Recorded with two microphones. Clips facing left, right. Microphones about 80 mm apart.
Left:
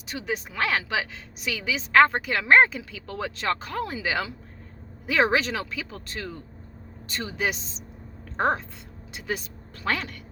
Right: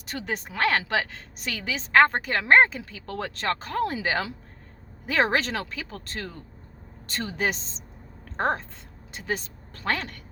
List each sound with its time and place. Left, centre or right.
0.0 s a woman's voice: right
3.1 s a woman's voice: right